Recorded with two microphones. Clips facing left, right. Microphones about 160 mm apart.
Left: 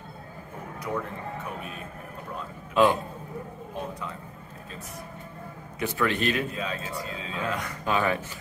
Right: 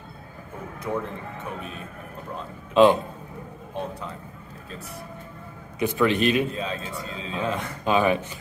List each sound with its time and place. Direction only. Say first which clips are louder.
2.7 s a man's voice: right 5 dB; 20° right (ahead or behind)
5.8 s a man's voice: right 5 dB; 20° right (ahead or behind)